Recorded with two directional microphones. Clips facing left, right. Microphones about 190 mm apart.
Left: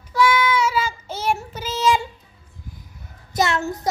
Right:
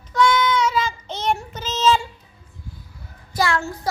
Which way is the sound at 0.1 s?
10° left (ahead or behind).